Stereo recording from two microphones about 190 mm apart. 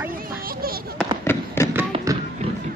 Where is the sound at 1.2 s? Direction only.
10° left (ahead or behind).